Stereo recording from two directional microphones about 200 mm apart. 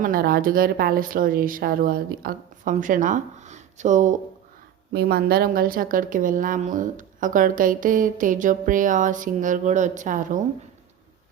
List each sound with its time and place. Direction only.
0.0 s speech: 45° right (ahead or behind)
4.9 s a woman's voice: 50° right (ahead or behind)